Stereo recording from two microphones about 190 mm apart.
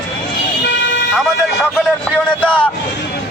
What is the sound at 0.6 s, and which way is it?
Vehicle, 75° left (ahead or behind).